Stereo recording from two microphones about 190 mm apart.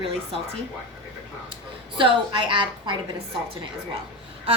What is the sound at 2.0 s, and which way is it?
Speech, 25° right (ahead or behind).